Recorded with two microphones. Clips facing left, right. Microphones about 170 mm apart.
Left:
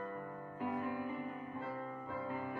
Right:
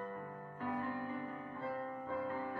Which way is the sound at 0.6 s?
15° left (ahead or behind).